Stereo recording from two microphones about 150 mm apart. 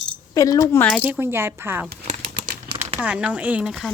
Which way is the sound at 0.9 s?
10° right (ahead or behind).